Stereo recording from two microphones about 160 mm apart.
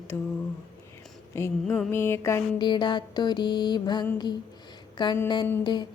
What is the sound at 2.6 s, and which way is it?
Music, 30° left (ahead or behind).